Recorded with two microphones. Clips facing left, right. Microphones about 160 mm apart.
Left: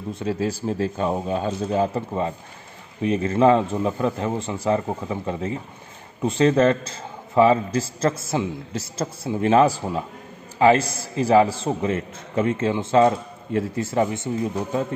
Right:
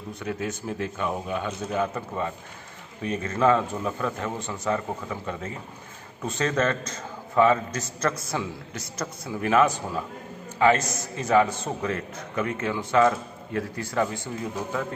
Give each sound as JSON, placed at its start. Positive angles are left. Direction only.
{"t": 0.1, "sound": "a man's voice", "side_deg": 30}